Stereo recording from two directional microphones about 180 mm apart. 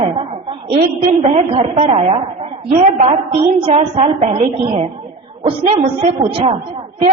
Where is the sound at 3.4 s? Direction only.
35° right (ahead or behind).